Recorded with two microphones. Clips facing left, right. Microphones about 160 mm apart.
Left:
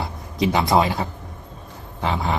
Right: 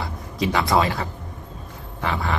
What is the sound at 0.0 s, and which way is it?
Speech, 20° left (ahead or behind).